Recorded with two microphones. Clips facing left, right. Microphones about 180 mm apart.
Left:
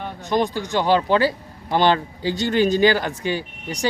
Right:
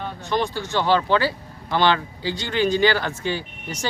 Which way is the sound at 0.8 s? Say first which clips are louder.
Left 2 dB; 45° left (ahead or behind).